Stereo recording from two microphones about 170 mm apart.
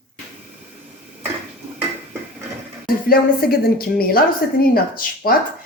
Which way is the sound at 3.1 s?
65° left (ahead or behind).